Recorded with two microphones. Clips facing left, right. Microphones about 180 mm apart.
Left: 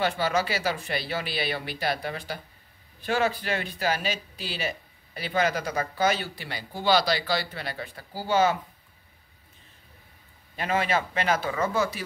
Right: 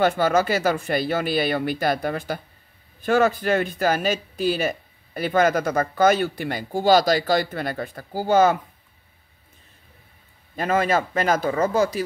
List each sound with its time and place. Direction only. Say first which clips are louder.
0.0 s speech: right 6 dB; 50° right (ahead or behind)
10.5 s speech: right 5 dB; 45° right (ahead or behind)